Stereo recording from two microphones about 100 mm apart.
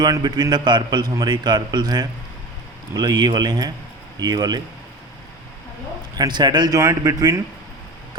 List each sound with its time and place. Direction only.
0.0 s speech: 45° right (ahead or behind)
6.1 s speech: 45° right (ahead or behind)